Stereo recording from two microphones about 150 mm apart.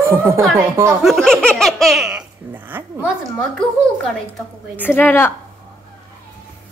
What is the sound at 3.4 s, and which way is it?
A woman's voice, 5° left (ahead or behind).